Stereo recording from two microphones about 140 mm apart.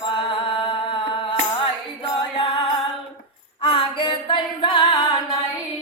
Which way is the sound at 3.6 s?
40° left (ahead or behind).